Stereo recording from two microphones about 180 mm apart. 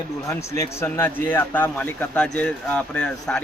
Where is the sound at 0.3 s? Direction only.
15° left (ahead or behind).